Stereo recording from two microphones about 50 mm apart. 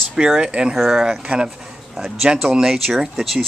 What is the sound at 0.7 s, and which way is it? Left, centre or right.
Speech, centre.